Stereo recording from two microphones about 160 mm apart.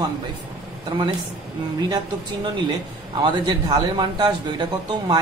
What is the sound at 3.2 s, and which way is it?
A man's voice, 25° right (ahead or behind).